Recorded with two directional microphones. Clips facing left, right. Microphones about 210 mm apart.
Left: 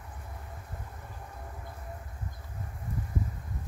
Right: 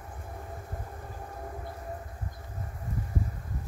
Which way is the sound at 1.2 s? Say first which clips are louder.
Right 6 dB; 45° right (ahead or behind).